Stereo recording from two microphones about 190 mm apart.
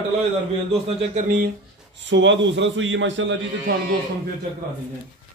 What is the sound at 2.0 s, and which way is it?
A man's voice, 75° right (ahead or behind).